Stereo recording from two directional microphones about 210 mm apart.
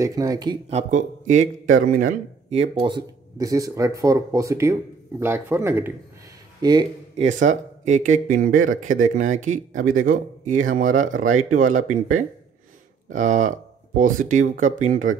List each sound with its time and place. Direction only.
0.0 s speech: 15° right (ahead or behind); by 2.7 s 35° right (ahead or behind)
2.8 s speech: 20° right (ahead or behind)
7.2 s speech: 35° right (ahead or behind)